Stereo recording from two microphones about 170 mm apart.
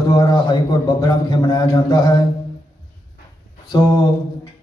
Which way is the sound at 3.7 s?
20° left (ahead or behind).